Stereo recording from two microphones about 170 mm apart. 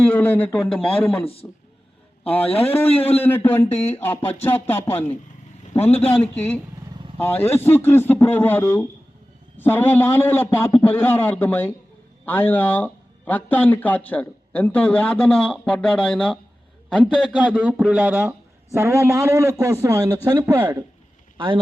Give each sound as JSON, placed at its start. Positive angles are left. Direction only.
{"t": 0.1, "sound": "a man's voice", "side_deg": 10}
{"t": 1.2, "sound": "a man's voice", "side_deg": 35}
{"t": 2.2, "sound": "a man's voice", "side_deg": 10}
{"t": 5.7, "sound": "a man's voice", "side_deg": 35}
{"t": 6.2, "sound": "a man's voice", "side_deg": 10}
{"t": 21.3, "sound": "speech", "side_deg": -30}